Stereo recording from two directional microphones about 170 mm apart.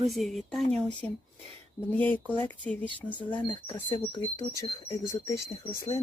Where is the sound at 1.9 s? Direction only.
10° left (ahead or behind).